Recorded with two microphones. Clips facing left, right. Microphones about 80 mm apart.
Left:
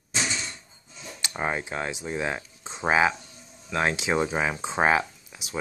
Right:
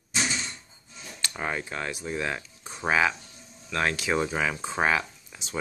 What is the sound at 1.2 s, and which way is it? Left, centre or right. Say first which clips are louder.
Speech: left 2 dB; left.